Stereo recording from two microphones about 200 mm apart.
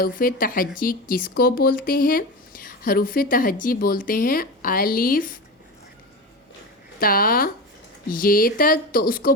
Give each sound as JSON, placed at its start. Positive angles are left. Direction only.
{"t": 0.0, "sound": "speech", "side_deg": 45}
{"t": 7.0, "sound": "speech", "side_deg": 45}